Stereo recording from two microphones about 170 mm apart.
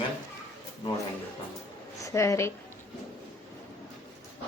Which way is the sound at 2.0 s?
15° left (ahead or behind).